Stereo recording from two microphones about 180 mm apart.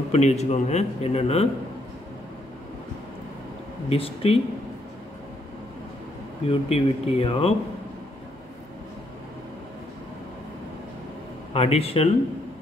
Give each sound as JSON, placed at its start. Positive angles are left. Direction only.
{"t": 0.1, "sound": "a man's voice", "side_deg": 35}
{"t": 3.9, "sound": "a man's voice", "side_deg": 30}
{"t": 6.5, "sound": "a man's voice", "side_deg": 35}
{"t": 11.5, "sound": "a man's voice", "side_deg": 35}